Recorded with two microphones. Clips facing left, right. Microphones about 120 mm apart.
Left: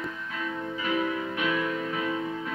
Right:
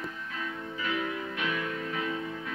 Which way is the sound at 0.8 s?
25° left (ahead or behind).